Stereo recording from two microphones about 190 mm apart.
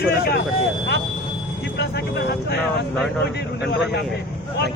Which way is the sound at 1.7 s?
60° left (ahead or behind).